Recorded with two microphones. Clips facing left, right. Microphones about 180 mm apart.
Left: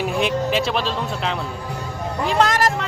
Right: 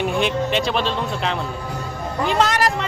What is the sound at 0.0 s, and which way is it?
Speech, centre (ahead or behind).